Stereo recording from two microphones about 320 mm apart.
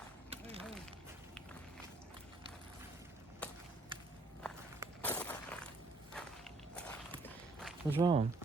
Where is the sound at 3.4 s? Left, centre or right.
Centre.